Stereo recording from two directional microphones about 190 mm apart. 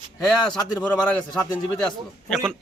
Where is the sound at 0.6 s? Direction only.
20° left (ahead or behind).